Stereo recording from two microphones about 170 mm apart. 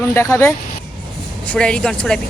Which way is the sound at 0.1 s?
15° left (ahead or behind).